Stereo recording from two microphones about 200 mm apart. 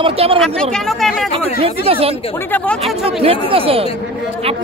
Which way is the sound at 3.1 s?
30° right (ahead or behind).